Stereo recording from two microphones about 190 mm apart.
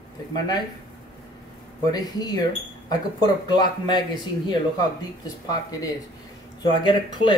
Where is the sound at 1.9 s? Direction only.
20° left (ahead or behind).